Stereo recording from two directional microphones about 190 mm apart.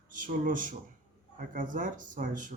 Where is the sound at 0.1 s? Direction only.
45° right (ahead or behind).